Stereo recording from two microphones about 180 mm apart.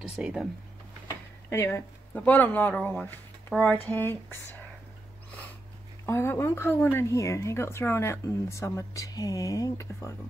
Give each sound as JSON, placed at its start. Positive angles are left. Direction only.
{"t": 0.1, "sound": "speech", "side_deg": 0}
{"t": 1.5, "sound": "a woman's voice", "side_deg": 15}
{"t": 6.0, "sound": "a woman's voice", "side_deg": 15}